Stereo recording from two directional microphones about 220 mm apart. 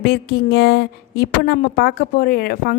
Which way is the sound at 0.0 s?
45° left (ahead or behind).